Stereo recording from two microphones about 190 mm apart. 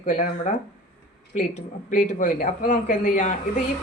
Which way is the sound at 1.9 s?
40° left (ahead or behind).